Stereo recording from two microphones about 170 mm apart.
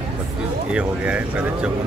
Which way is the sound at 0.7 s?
5° right (ahead or behind).